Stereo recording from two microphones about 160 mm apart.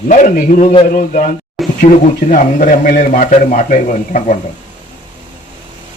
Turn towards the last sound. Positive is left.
turn(degrees=50)  # may be behind; listen again after turning